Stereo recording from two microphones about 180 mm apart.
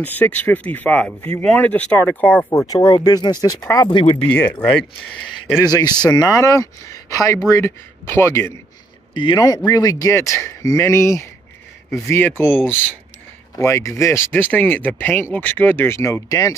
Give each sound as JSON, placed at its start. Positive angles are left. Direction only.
{"t": 0.0, "sound": "speech", "side_deg": 10}
{"t": 2.6, "sound": "speech", "side_deg": 20}
{"t": 4.0, "sound": "speech", "side_deg": 30}
{"t": 4.3, "sound": "speech", "side_deg": 10}
{"t": 9.1, "sound": "speech", "side_deg": 25}